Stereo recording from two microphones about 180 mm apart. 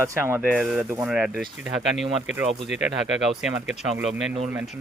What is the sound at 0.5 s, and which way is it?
Speech, 5° right (ahead or behind).